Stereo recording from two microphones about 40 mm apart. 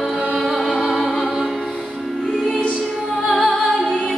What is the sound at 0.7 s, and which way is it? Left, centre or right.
Music, centre.